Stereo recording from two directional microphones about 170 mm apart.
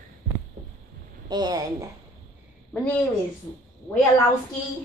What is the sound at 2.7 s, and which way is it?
Speech, 10° left (ahead or behind).